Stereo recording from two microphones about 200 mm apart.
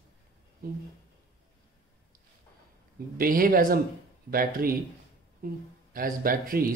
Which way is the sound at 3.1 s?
45° right (ahead or behind).